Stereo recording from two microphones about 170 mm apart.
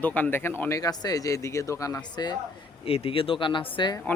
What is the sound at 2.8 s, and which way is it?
Speech, 35° left (ahead or behind).